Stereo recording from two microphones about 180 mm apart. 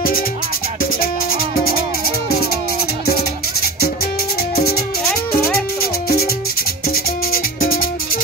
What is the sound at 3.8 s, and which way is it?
Music, 60° left (ahead or behind).